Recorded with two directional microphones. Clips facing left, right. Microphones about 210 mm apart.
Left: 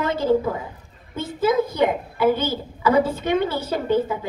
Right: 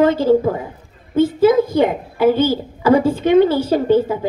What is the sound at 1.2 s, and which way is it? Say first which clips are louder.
Speech: right 8 dB; 30° right (ahead or behind).